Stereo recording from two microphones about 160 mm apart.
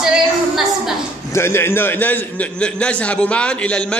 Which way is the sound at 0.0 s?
5° right (ahead or behind).